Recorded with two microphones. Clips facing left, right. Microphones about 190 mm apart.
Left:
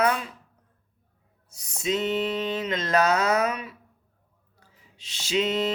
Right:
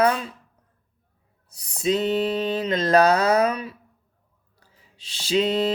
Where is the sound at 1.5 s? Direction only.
35° right (ahead or behind).